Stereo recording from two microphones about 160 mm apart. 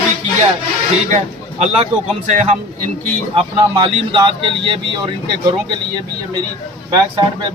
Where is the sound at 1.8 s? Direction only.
45° right (ahead or behind).